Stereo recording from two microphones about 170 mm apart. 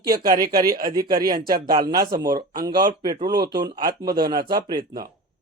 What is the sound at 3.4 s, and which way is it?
Speech, 65° right (ahead or behind).